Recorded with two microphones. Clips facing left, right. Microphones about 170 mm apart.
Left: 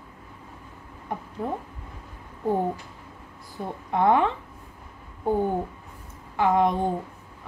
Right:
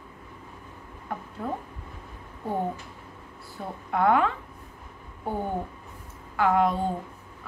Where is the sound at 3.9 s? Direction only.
20° left (ahead or behind).